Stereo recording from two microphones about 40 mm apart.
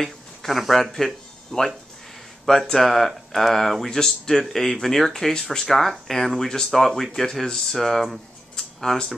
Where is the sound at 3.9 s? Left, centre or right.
Centre.